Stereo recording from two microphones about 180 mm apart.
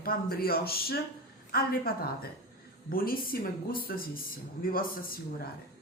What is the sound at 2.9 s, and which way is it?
A man's voice, 55° left (ahead or behind).